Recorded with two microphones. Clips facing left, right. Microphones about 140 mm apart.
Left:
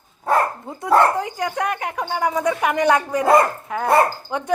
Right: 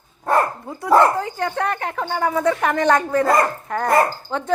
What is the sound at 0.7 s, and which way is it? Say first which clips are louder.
Speech: right 1 dB; 20° left (ahead or behind).